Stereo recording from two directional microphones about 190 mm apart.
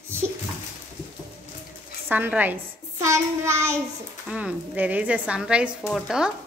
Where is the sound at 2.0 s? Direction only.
10° right (ahead or behind).